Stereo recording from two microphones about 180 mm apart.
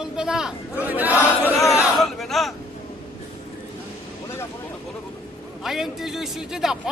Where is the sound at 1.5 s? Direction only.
15° left (ahead or behind).